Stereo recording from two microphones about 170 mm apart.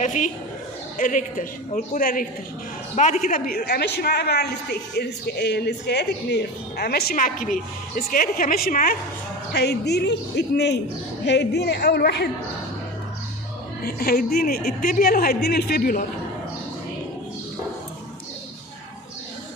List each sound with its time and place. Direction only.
0.0 s a woman's voice: 45° left (ahead or behind)
9.5 s a man's voice: 75° left (ahead or behind)
13.8 s a woman's voice: 65° left (ahead or behind)